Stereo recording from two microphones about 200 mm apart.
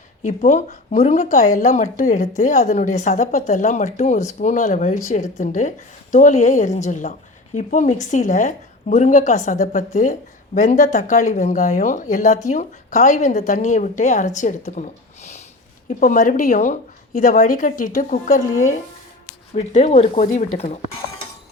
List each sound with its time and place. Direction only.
0.2 s speech: 35° left (ahead or behind)
19.5 s speech: 35° left (ahead or behind)